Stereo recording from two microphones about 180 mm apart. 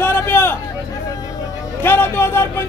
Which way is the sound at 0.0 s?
15° left (ahead or behind).